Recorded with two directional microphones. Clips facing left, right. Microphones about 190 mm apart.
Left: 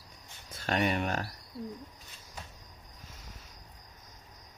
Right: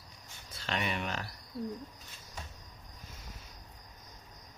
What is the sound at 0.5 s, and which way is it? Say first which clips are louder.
Speech: left 6 dB; 50° left (ahead or behind).